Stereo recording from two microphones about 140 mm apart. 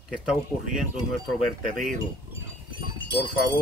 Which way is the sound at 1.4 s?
70° right (ahead or behind).